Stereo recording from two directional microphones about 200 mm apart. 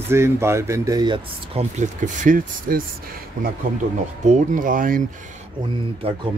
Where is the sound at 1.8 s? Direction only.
40° right (ahead or behind).